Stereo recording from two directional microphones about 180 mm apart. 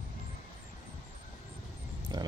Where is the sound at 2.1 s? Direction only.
20° right (ahead or behind).